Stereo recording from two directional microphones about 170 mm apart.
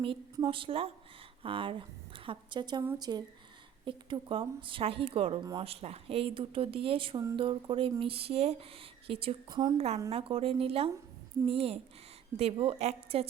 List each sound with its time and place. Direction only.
0.0 s a woman's voice: 30° right (ahead or behind)
9.7 s speech: 40° right (ahead or behind)